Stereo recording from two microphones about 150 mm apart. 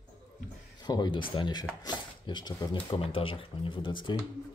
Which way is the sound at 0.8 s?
30° left (ahead or behind).